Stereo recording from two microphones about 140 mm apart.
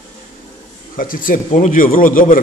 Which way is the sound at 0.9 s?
90° left.